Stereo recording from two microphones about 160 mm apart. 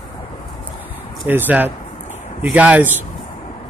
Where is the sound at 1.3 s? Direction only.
10° right (ahead or behind).